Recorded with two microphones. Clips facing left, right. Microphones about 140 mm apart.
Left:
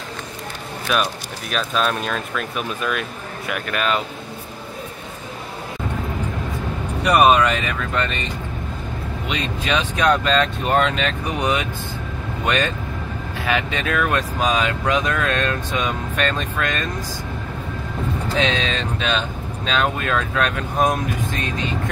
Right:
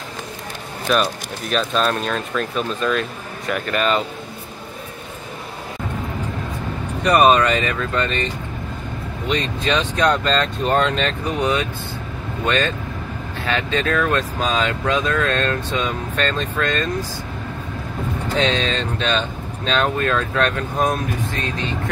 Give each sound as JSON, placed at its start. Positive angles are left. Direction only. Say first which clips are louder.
{"t": 0.9, "sound": "speech", "louder": "right 3 dB", "side_deg": 5}
{"t": 7.0, "sound": "speech", "louder": "right 1 dB", "side_deg": 5}
{"t": 9.3, "sound": "speech", "louder": "right 3 dB", "side_deg": 10}
{"t": 11.2, "sound": "speech", "louder": "right 1 dB", "side_deg": 15}
{"t": 18.4, "sound": "speech", "louder": "right 2 dB", "side_deg": 10}